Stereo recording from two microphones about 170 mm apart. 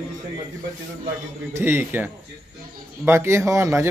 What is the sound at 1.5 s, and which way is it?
Speech, 10° right (ahead or behind).